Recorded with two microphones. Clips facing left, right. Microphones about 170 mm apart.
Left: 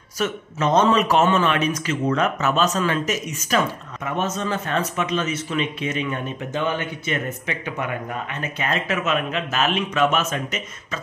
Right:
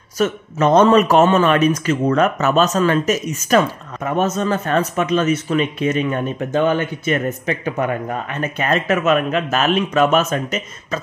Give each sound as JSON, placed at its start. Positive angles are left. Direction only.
{"t": 0.2, "sound": "speech", "side_deg": -55}